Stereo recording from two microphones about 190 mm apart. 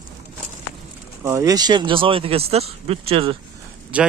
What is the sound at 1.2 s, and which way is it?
Speech, 15° right (ahead or behind).